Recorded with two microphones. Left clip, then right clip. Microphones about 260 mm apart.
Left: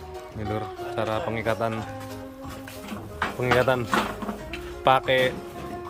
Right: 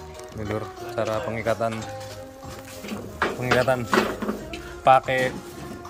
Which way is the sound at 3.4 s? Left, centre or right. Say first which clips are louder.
Left 1 dB; centre.